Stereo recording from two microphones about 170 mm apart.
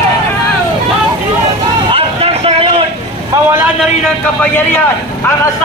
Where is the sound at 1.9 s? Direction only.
35° right (ahead or behind).